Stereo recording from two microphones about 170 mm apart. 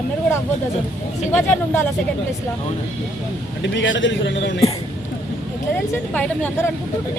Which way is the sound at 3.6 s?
90° left.